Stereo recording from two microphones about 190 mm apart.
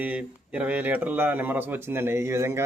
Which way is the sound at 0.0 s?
5° right (ahead or behind).